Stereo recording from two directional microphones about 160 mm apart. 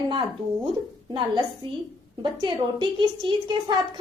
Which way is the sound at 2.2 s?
30° right (ahead or behind).